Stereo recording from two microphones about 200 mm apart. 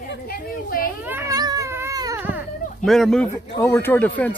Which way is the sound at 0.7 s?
45° left (ahead or behind).